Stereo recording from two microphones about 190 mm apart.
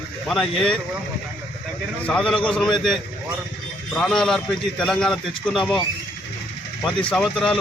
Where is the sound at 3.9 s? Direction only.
5° left (ahead or behind).